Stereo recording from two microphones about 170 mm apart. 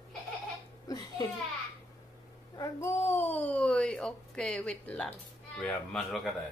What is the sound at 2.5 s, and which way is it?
A child's voice, 20° left (ahead or behind).